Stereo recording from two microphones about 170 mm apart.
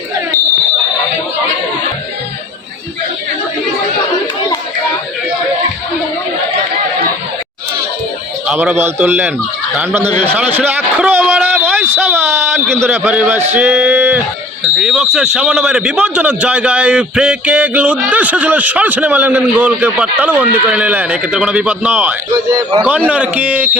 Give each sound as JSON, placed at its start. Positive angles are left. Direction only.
{"t": 8.4, "sound": "speech", "side_deg": -10}
{"t": 10.1, "sound": "a man's voice", "side_deg": 30}
{"t": 10.3, "sound": "a sound", "side_deg": -10}
{"t": 11.9, "sound": "speech", "side_deg": -10}
{"t": 13.5, "sound": "male singing", "side_deg": -10}
{"t": 14.6, "sound": "speech", "side_deg": -5}